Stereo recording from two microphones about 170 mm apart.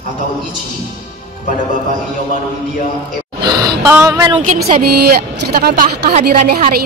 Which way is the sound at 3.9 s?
20° right (ahead or behind).